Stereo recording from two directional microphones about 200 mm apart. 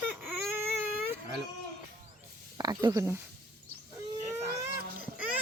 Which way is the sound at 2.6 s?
20° right (ahead or behind).